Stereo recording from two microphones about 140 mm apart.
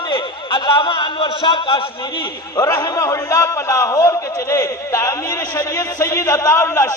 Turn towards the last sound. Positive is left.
turn(degrees=20)  # may be behind; listen again after turning